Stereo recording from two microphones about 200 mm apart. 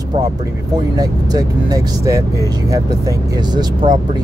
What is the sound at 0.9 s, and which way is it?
Speech, 20° right (ahead or behind).